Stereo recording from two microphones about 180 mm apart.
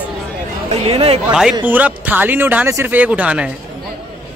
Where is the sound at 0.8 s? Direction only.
35° right (ahead or behind).